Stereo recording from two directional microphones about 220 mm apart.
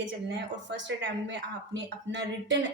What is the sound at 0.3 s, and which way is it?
Speech, 50° right (ahead or behind).